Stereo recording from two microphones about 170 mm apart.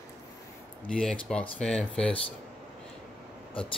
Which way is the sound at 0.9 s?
5° left (ahead or behind).